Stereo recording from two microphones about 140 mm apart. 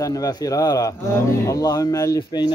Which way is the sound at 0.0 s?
25° left (ahead or behind).